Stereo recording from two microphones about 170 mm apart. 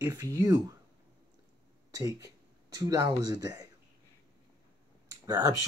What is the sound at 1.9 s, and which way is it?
Speech, 20° right (ahead or behind).